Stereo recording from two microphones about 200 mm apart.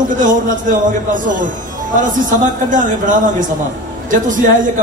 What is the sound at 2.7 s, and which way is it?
Speech, 40° right (ahead or behind).